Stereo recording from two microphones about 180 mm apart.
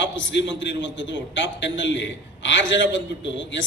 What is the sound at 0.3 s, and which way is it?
A man's voice, 85° left.